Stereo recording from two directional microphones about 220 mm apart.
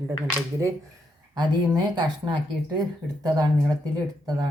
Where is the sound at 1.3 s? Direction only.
20° right (ahead or behind).